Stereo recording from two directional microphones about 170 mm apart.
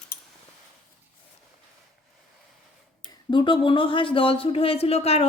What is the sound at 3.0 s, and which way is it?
Speech, 25° left (ahead or behind).